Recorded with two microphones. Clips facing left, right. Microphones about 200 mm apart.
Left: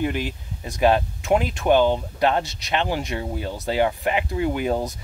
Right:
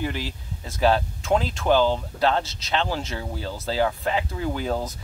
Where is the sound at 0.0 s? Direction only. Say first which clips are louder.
Left 4 dB; 20° left (ahead or behind).